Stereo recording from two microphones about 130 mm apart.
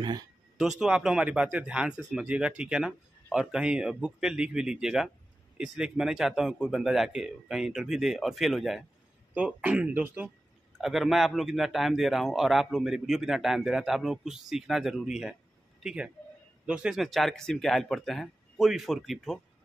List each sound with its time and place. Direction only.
0.0 s speech: 30° right (ahead or behind)
0.6 s a man's voice: 5° right (ahead or behind)